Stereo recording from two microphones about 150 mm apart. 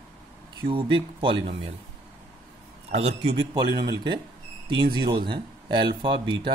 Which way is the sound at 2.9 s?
45° right (ahead or behind).